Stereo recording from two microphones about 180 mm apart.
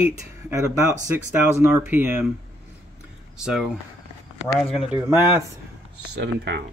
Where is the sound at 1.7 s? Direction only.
10° right (ahead or behind).